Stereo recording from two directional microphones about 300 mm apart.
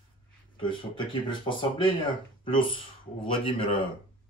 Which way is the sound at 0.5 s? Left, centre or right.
Centre.